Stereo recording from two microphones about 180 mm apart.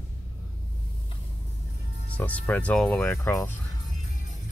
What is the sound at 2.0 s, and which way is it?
Speech, 10° left (ahead or behind).